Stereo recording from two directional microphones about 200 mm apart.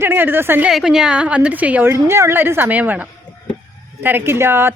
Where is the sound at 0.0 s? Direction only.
10° right (ahead or behind).